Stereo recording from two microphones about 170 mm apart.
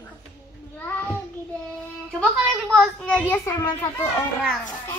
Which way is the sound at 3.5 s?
20° left (ahead or behind).